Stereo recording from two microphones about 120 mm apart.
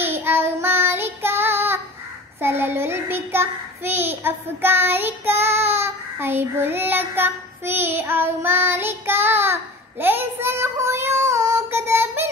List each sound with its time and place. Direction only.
0.0 s child singing: 20° right (ahead or behind)